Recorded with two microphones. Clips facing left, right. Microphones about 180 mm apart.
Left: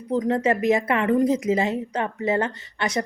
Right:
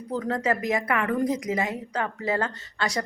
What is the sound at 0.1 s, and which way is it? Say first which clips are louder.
Speech: left 5 dB; 20° left (ahead or behind).